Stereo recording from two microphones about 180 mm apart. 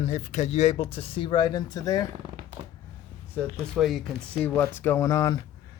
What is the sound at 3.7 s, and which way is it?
Speech, centre (ahead or behind).